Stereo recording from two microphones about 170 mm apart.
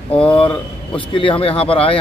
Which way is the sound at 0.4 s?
30° left (ahead or behind).